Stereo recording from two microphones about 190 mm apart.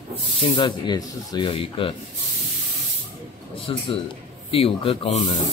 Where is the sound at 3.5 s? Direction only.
30° left (ahead or behind).